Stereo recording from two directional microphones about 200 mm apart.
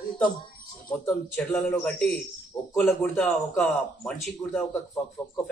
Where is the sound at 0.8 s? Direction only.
5° left (ahead or behind).